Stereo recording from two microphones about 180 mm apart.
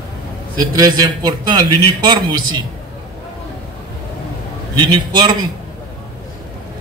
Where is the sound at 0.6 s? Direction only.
20° right (ahead or behind).